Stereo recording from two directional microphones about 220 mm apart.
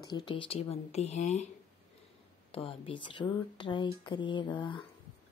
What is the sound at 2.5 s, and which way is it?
Speech, 25° left (ahead or behind).